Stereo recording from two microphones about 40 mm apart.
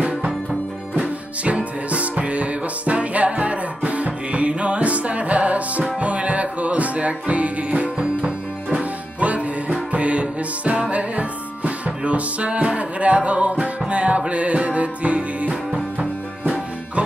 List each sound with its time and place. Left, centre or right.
1.4 s music: right